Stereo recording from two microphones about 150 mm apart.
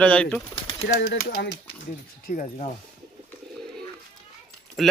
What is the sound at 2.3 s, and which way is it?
Speech, 65° left (ahead or behind).